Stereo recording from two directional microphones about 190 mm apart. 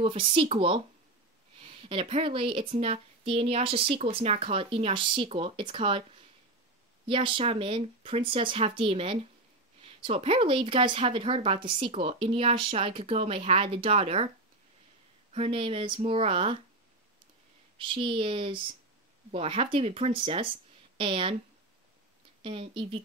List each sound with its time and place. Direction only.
0.0 s a woman's voice: 30° right (ahead or behind)
7.1 s a woman's voice: 25° right (ahead or behind)
15.3 s a woman's voice: 30° right (ahead or behind)
17.7 s a woman's voice: 25° right (ahead or behind)
22.4 s a woman's voice: 30° right (ahead or behind)